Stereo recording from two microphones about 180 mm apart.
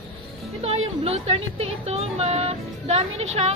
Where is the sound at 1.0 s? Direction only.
35° right (ahead or behind).